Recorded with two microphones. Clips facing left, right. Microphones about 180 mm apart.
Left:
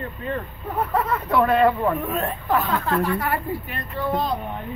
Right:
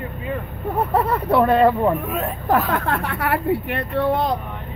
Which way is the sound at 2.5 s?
50° right (ahead or behind).